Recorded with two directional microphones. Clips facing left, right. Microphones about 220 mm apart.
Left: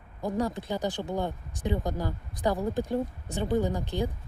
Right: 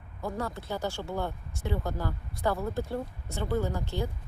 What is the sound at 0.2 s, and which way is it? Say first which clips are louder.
Speech: left 5 dB; 15° left (ahead or behind).